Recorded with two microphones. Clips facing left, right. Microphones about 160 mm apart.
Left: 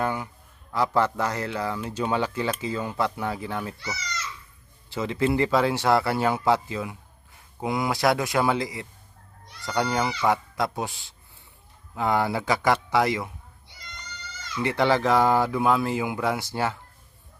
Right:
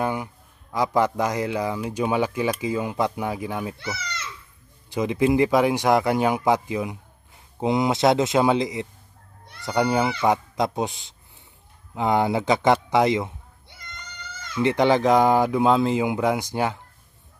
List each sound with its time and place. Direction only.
0.0 s a sound: 15° right (ahead or behind)
0.7 s speech: 15° right (ahead or behind)
3.8 s a sound: 55° right (ahead or behind)
4.9 s speech: 15° right (ahead or behind)
13.7 s goat: 55° right (ahead or behind)
14.6 s speech: 20° right (ahead or behind)